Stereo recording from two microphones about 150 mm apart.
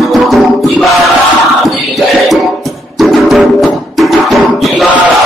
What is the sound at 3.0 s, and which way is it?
Music, centre (ahead or behind).